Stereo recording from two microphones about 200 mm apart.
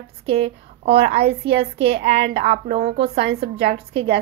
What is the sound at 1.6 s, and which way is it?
Speech, 30° right (ahead or behind).